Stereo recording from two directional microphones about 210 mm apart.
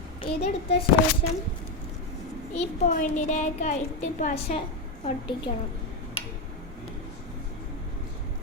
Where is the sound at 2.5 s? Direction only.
35° left (ahead or behind).